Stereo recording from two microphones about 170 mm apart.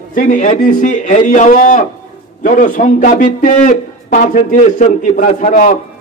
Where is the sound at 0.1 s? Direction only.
50° left (ahead or behind).